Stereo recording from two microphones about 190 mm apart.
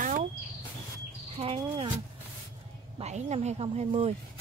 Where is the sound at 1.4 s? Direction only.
30° right (ahead or behind).